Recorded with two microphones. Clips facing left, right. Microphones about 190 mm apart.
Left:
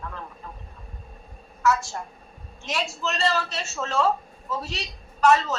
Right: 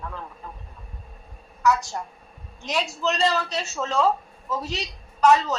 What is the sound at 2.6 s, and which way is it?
A man's voice, centre (ahead or behind).